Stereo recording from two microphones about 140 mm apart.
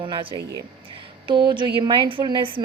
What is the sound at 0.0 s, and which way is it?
A woman's voice, 35° right (ahead or behind).